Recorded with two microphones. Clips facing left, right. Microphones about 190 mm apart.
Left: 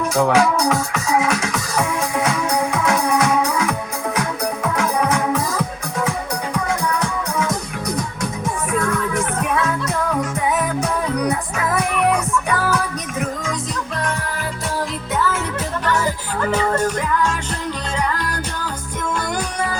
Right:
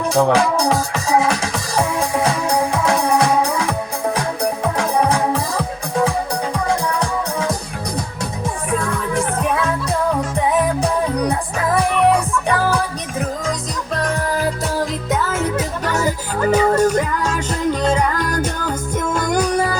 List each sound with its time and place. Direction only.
0.0 s music: 30° right (ahead or behind)
9.1 s music: 30° right (ahead or behind)